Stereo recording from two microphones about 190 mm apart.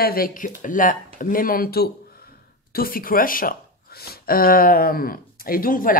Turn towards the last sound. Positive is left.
turn(degrees=45)  # may be behind; listen again after turning